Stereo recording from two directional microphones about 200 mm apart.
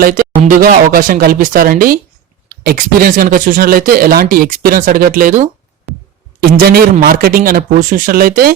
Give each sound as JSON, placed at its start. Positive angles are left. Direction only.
{"t": 0.0, "sound": "speech", "side_deg": -45}
{"t": 6.6, "sound": "speech", "side_deg": -50}